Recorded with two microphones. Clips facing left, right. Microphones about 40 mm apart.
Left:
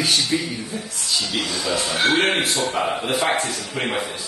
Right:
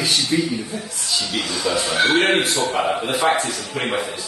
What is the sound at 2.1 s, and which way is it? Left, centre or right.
Speech, centre.